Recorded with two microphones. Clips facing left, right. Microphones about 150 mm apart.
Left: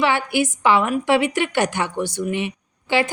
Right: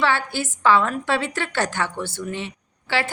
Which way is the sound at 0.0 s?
15° left (ahead or behind).